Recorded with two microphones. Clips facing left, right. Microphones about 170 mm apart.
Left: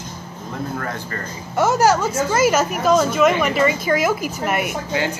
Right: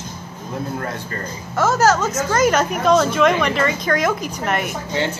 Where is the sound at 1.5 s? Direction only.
15° left (ahead or behind).